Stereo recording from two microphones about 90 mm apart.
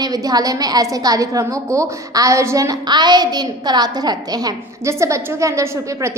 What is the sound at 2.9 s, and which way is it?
A woman's voice, 55° right (ahead or behind).